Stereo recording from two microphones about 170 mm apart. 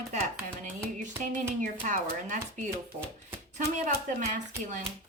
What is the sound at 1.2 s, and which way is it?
A woman's voice, 50° right (ahead or behind).